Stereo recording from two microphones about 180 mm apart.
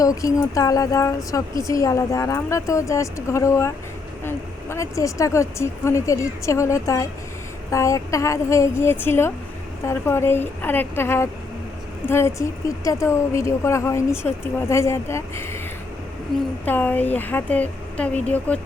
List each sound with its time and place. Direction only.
0.0 s a woman's voice: 20° left (ahead or behind)
16.6 s a woman's voice: 10° left (ahead or behind)